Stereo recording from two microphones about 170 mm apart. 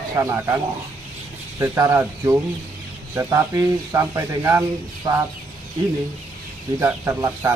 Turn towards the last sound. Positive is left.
turn(degrees=-15)  # may be behind; listen again after turning